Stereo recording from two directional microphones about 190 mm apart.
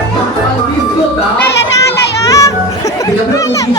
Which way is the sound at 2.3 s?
15° left (ahead or behind).